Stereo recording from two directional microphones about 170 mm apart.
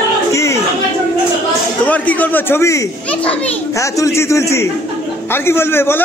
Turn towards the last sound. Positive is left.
turn(degrees=15)  # may be behind; listen again after turning